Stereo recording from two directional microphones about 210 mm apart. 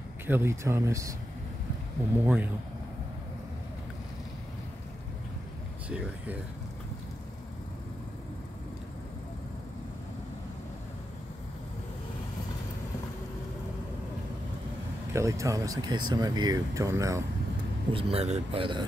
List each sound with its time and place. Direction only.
0.3 s speech: 10° right (ahead or behind)
2.1 s speech: 5° right (ahead or behind)
5.9 s speech: 5° right (ahead or behind)
15.1 s speech: 15° right (ahead or behind)
17.9 s speech: 30° right (ahead or behind)